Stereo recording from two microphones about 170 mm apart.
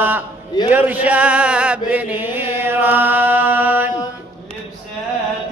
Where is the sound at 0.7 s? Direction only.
10° right (ahead or behind).